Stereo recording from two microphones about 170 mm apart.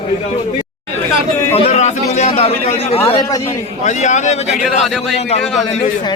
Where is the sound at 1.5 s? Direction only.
40° left (ahead or behind).